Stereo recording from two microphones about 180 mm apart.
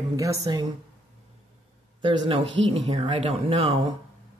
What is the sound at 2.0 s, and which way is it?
Speech, 25° right (ahead or behind).